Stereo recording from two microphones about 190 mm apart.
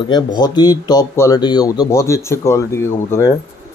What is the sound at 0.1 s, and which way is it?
Speech, 20° left (ahead or behind).